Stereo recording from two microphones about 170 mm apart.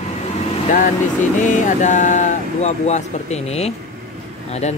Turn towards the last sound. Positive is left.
turn(degrees=40)  # may be behind; listen again after turning